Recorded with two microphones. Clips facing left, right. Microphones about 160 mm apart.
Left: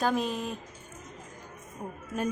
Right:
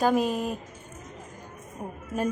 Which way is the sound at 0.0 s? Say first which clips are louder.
Right 5 dB; 10° right (ahead or behind).